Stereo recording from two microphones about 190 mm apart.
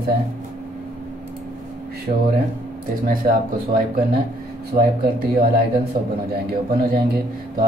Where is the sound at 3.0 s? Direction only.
50° right (ahead or behind).